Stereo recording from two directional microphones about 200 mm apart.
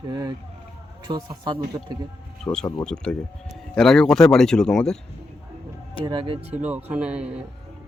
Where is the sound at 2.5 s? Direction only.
10° left (ahead or behind).